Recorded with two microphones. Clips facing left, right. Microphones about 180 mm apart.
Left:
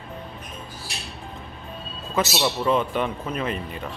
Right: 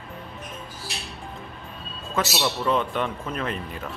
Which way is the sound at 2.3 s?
5° left (ahead or behind).